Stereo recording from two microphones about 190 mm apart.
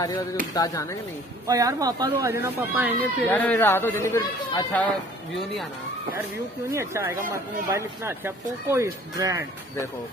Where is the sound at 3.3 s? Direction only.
10° left (ahead or behind).